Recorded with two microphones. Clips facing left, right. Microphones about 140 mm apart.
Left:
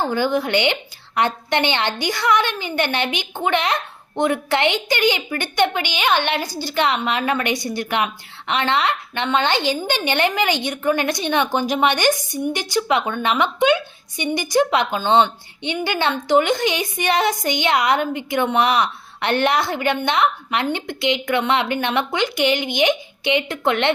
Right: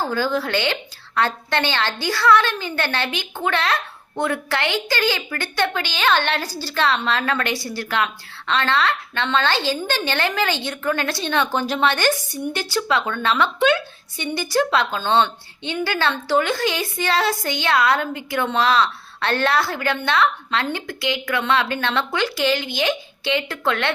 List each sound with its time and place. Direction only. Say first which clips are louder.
0.0 s a woman's voice: left 2 dB; 20° left (ahead or behind)